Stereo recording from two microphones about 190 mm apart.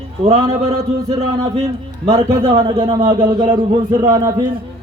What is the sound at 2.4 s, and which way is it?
A man's voice, 30° right (ahead or behind).